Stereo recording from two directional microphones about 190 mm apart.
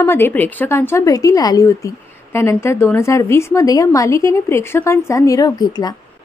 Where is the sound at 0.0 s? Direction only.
10° left (ahead or behind).